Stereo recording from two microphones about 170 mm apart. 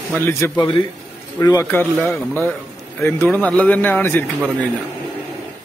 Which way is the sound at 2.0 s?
5° left (ahead or behind).